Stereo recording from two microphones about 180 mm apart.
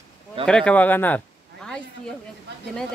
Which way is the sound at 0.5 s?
5° left (ahead or behind).